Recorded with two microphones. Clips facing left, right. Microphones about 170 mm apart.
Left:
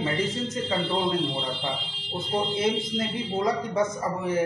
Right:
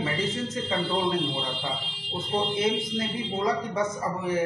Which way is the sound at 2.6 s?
25° left (ahead or behind).